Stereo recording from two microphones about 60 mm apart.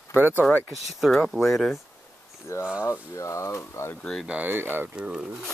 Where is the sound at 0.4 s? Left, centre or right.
Left.